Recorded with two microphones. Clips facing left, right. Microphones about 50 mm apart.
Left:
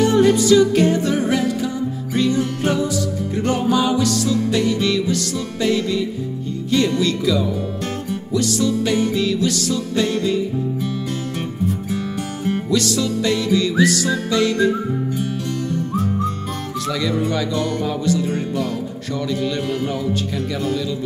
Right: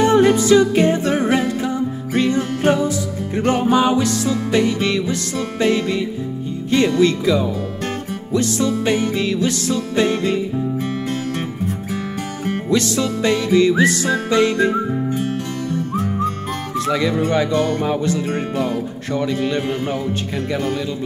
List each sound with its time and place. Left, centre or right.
0.0 s music: right
12.4 s music: right
16.7 s speech: right
17.3 s music: right